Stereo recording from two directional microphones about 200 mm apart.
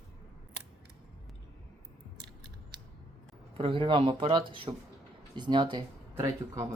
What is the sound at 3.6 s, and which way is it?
Speech, 25° right (ahead or behind).